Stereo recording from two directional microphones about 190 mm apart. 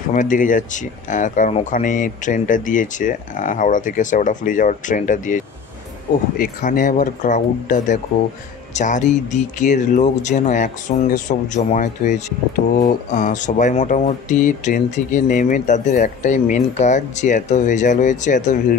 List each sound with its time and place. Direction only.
0.1 s speech: 45° left (ahead or behind)